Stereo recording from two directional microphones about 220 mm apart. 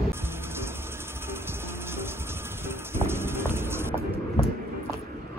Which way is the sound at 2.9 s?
10° right (ahead or behind).